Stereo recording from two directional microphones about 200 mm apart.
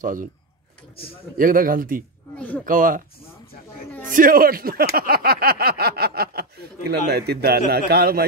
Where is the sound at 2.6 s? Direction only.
45° right (ahead or behind).